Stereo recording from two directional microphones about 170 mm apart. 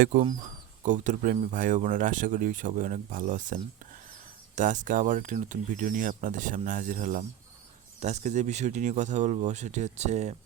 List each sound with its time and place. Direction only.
0.8 s speech: 45° right (ahead or behind)